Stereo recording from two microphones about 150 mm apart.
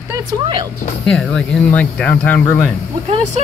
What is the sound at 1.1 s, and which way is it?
Speech, 5° left (ahead or behind).